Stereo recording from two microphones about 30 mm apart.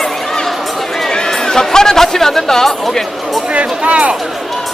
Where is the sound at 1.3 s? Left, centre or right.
Centre.